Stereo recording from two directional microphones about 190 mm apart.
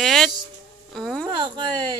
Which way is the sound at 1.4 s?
25° right (ahead or behind).